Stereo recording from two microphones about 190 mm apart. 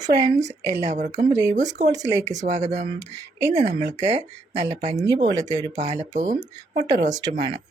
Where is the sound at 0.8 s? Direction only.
40° right (ahead or behind).